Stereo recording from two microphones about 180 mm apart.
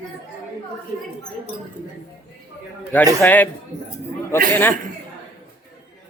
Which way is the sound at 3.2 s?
10° left (ahead or behind).